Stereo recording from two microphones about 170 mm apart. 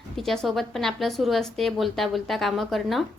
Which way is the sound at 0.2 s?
Centre (ahead or behind).